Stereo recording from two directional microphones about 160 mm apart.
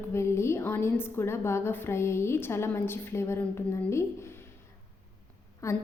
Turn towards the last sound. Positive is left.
turn(degrees=20)  # may be behind; listen again after turning